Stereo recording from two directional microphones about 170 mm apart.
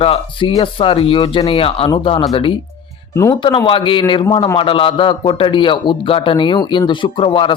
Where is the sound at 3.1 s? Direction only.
15° left (ahead or behind).